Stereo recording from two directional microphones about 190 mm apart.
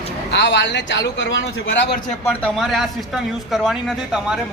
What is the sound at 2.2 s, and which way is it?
Speech, 5° left (ahead or behind).